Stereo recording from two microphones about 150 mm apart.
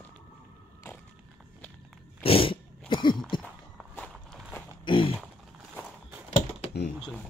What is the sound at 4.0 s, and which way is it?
Walk, 10° left (ahead or behind).